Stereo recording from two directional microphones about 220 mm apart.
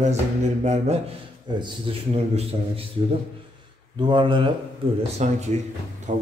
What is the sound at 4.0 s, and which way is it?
A man's voice, 20° right (ahead or behind).